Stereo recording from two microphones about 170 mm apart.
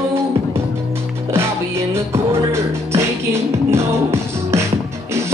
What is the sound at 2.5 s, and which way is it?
Music, 15° right (ahead or behind).